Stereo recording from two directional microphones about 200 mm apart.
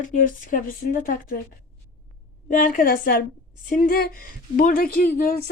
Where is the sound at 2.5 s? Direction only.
40° left (ahead or behind).